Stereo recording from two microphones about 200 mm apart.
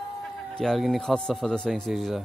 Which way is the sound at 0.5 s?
Centre (ahead or behind).